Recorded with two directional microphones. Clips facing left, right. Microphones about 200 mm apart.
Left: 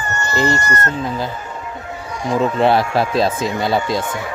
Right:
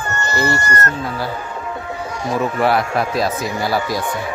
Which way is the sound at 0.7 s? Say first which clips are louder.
Even; 25° left (ahead or behind).